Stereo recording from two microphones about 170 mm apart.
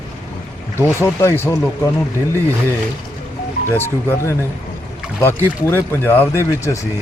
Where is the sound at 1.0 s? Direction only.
15° left (ahead or behind).